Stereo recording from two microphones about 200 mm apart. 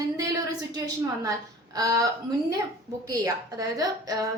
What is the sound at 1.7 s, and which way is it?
Speech, 20° right (ahead or behind).